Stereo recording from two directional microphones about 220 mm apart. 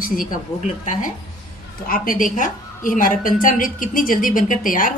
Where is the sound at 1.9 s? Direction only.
40° left (ahead or behind).